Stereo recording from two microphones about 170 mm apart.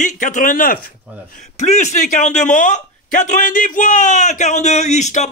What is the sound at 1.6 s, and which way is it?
Speech, 45° left (ahead or behind).